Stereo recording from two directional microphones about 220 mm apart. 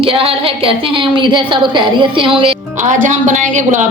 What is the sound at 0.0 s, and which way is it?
A woman's voice, 25° right (ahead or behind).